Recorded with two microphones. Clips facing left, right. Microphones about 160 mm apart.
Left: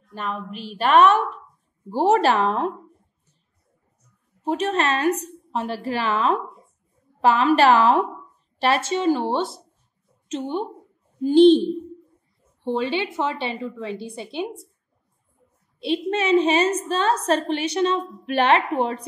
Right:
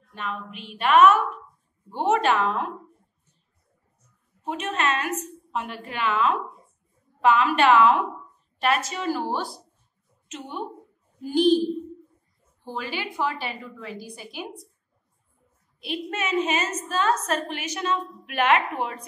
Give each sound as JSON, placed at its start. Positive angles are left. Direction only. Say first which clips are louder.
{"t": 0.1, "sound": "a woman's voice", "louder": "left 4 dB", "side_deg": 35}
{"t": 4.4, "sound": "a woman's voice", "louder": "left 6 dB", "side_deg": 35}
{"t": 15.8, "sound": "a woman's voice", "louder": "left 7 dB", "side_deg": 30}